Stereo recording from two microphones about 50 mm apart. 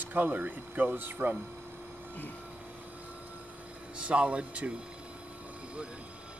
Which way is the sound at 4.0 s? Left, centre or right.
Right.